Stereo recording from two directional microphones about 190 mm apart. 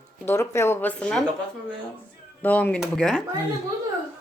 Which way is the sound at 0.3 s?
15° left (ahead or behind).